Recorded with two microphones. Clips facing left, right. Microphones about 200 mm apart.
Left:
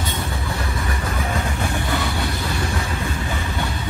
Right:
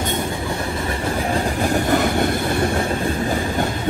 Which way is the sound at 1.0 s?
35° right (ahead or behind).